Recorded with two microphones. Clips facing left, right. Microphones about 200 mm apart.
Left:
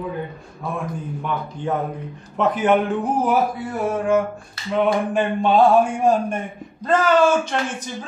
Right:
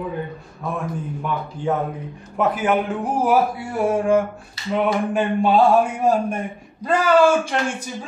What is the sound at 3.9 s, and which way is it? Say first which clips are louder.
Mantra: right 1 dB; 10° right (ahead or behind).